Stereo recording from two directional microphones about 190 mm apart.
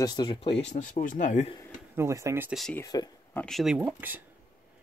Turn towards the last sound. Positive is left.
turn(degrees=-10)  # may be behind; listen again after turning